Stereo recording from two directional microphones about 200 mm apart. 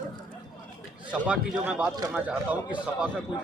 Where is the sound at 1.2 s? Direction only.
5° right (ahead or behind).